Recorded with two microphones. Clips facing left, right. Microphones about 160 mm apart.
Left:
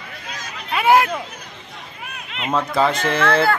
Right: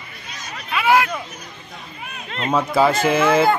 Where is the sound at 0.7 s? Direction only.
40° left (ahead or behind).